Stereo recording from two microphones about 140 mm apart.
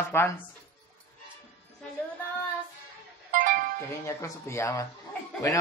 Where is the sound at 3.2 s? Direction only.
85° right.